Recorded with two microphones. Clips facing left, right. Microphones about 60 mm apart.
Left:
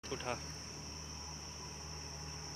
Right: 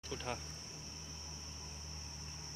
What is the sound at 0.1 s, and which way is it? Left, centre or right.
Speech, centre.